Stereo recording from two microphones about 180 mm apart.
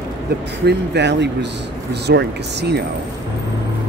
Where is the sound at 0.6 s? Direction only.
70° right (ahead or behind).